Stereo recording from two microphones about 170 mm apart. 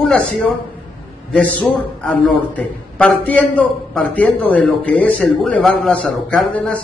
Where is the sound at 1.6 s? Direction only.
10° left (ahead or behind).